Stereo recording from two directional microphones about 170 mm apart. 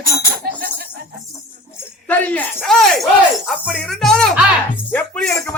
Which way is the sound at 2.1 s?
10° left (ahead or behind).